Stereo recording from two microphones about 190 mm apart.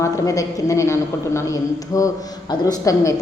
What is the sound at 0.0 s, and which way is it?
A woman's voice, 15° left (ahead or behind).